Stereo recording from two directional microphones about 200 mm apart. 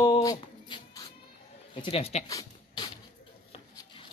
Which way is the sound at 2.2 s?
20° left (ahead or behind).